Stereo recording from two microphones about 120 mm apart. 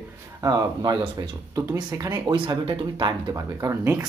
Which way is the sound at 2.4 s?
45° right (ahead or behind).